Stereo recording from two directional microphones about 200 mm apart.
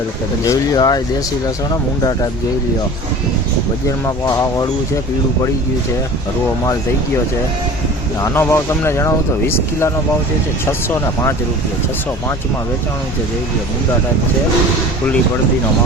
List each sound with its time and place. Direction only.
0.4 s speech: 15° left (ahead or behind)
3.8 s speech: 15° left (ahead or behind)
8.2 s speech: 10° left (ahead or behind)
10.7 s speech: 15° left (ahead or behind)